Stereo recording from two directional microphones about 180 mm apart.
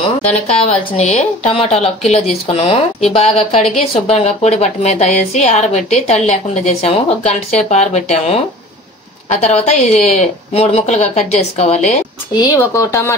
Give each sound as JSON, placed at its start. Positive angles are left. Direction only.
{"t": 0.9, "sound": "speech", "side_deg": 40}
{"t": 12.4, "sound": "speech", "side_deg": 20}